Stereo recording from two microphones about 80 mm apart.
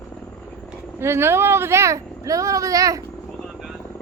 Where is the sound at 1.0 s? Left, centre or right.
Right.